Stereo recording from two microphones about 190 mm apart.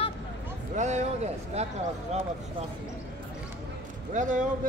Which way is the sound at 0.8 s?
40° right (ahead or behind).